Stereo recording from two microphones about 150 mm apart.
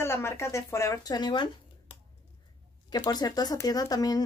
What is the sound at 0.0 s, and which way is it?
Speech, 15° left (ahead or behind).